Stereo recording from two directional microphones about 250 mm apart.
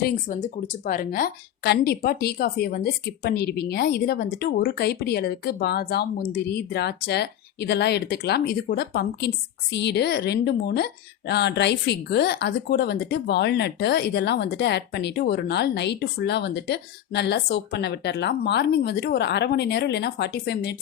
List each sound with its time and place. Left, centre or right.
0.0 s a woman's voice: left